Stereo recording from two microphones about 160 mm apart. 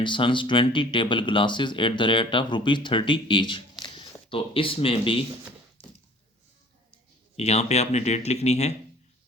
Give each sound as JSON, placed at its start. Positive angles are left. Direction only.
{"t": 0.0, "sound": "speech", "side_deg": 30}
{"t": 5.8, "sound": "a sound", "side_deg": 35}
{"t": 7.3, "sound": "speech", "side_deg": 40}